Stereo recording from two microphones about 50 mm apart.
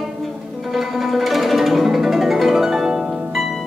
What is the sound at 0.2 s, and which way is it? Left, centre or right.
Zither, centre.